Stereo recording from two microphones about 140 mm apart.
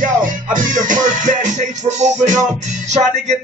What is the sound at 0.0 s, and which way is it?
Music, 70° right (ahead or behind).